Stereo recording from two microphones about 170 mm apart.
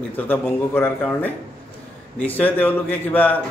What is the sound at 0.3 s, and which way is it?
Speech, 10° left (ahead or behind).